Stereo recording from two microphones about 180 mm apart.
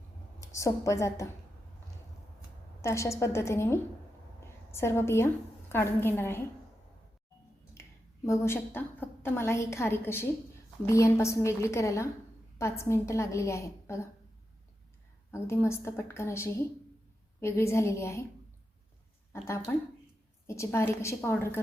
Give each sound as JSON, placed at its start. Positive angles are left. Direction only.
{"t": 0.3, "sound": "a woman's voice", "side_deg": 15}
{"t": 2.8, "sound": "a woman's voice", "side_deg": 15}
{"t": 7.7, "sound": "a woman's voice", "side_deg": 15}
{"t": 15.3, "sound": "a woman's voice", "side_deg": 15}
{"t": 19.3, "sound": "a woman's voice", "side_deg": 15}